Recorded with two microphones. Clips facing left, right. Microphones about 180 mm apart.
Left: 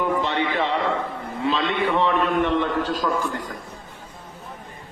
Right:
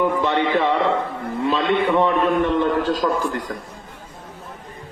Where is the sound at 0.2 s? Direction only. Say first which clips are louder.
Right 4 dB; 50° right (ahead or behind).